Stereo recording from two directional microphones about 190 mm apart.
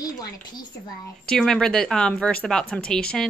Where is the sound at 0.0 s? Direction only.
20° left (ahead or behind).